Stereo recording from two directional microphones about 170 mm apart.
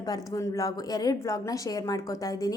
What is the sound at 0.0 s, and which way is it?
A woman's voice, 20° left (ahead or behind).